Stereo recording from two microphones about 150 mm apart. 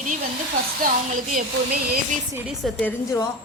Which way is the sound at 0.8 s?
70° right (ahead or behind).